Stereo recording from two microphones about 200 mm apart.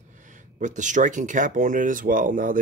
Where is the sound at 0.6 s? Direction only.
40° right (ahead or behind).